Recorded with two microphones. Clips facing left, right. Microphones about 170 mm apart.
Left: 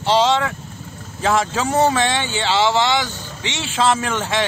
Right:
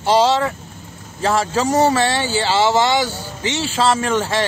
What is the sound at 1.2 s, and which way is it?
Speech, centre (ahead or behind).